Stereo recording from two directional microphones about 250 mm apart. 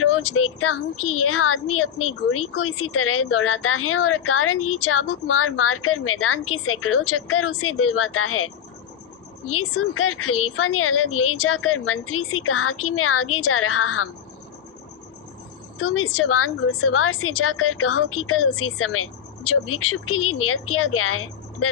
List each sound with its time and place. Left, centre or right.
0.0 s a woman's voice: left
9.5 s a woman's voice: left
15.8 s a woman's voice: left